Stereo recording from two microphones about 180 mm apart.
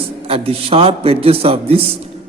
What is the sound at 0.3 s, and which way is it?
A man's voice, 30° right (ahead or behind).